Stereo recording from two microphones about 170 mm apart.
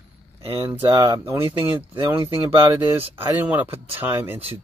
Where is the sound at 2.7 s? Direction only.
15° right (ahead or behind).